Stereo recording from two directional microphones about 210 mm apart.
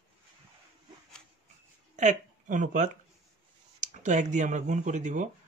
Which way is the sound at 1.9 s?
35° right (ahead or behind).